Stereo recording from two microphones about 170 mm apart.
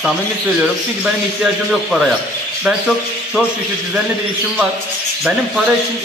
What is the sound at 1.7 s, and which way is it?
Speech, 5° right (ahead or behind).